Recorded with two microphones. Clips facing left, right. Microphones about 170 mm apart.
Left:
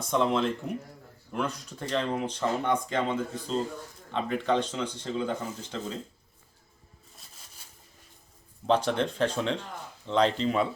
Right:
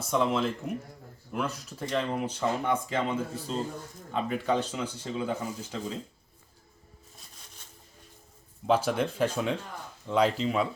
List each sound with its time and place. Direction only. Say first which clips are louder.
0.0 s speech: left 1 dB; 5° right (ahead or behind)
7.2 s a sound: even; centre (ahead or behind)
8.6 s speech: even; 5° right (ahead or behind)